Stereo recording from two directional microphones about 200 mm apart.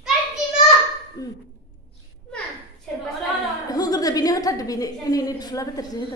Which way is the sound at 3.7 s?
20° left (ahead or behind).